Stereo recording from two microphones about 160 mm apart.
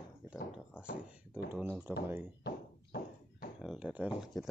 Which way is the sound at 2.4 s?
75° left (ahead or behind).